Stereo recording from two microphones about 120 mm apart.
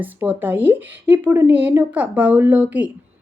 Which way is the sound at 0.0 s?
15° right (ahead or behind).